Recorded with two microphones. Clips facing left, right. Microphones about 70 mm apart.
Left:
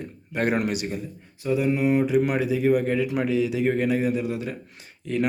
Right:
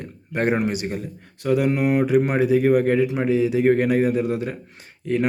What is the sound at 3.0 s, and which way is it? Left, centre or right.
Speech, right.